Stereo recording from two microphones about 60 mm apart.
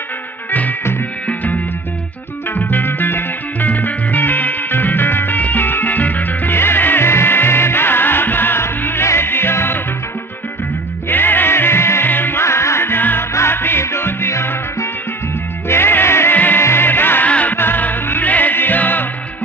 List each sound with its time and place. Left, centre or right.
0.5 s music: left
11.1 s music: left
17.3 s music: left